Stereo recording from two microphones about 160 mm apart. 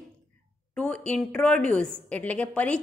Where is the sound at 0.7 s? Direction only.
10° left (ahead or behind).